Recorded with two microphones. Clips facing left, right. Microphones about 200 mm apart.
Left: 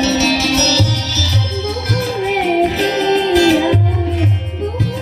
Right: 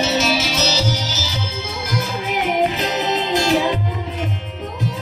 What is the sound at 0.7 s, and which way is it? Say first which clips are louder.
Music: left 4 dB; 70° left (ahead or behind).